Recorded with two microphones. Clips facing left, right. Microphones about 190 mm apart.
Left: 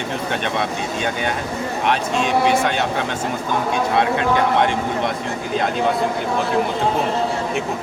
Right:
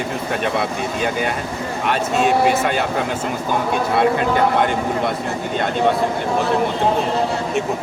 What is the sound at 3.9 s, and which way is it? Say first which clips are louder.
Speech: right 2 dB; centre (ahead or behind).